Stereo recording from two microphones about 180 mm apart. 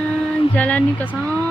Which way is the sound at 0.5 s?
10° left (ahead or behind).